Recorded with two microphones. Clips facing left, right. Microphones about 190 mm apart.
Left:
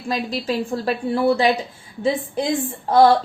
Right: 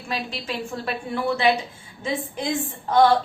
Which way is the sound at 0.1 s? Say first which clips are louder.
Left 6 dB; 35° left (ahead or behind).